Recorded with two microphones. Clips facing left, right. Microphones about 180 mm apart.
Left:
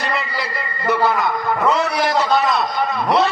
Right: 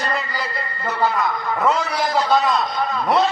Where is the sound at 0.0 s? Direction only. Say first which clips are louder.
Left 1 dB; 75° left (ahead or behind).